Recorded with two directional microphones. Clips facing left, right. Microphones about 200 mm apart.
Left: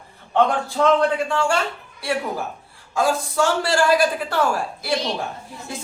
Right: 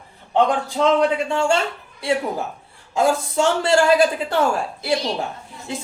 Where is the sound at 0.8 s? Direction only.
20° right (ahead or behind).